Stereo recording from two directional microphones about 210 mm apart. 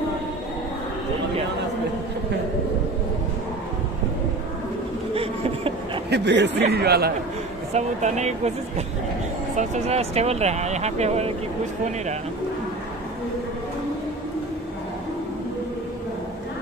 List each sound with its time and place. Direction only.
5.1 s a sound: 25° right (ahead or behind)
6.0 s a man's voice: 55° right (ahead or behind)
7.7 s speech: 35° right (ahead or behind)